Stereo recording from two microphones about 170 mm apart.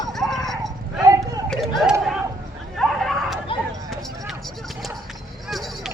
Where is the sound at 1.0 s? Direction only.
20° right (ahead or behind).